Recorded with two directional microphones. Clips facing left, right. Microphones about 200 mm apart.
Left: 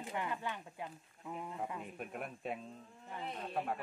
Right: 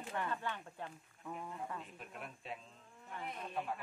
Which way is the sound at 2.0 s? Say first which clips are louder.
Left 7 dB; 55° left (ahead or behind).